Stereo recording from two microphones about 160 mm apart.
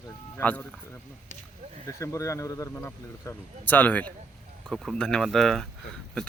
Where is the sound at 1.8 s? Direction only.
20° left (ahead or behind).